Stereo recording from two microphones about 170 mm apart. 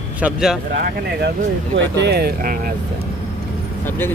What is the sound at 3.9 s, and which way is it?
Speech, 10° left (ahead or behind).